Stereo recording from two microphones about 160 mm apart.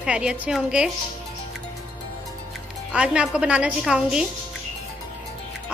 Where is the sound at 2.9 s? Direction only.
5° right (ahead or behind).